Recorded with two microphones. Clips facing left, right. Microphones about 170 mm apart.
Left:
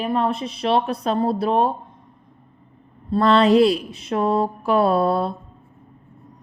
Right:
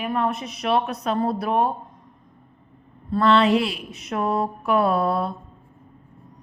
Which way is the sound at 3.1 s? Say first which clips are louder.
Left 3 dB; 35° left (ahead or behind).